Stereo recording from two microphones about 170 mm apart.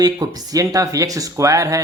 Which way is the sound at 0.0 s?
20° right (ahead or behind).